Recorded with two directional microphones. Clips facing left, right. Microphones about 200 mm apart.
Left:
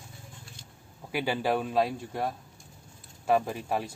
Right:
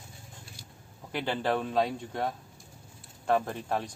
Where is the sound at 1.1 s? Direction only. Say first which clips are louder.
Left 2 dB; 10° left (ahead or behind).